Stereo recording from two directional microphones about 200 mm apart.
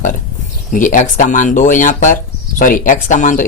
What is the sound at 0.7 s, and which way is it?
Speech, 40° left (ahead or behind).